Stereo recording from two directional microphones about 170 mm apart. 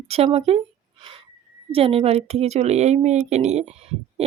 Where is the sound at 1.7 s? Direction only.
35° right (ahead or behind).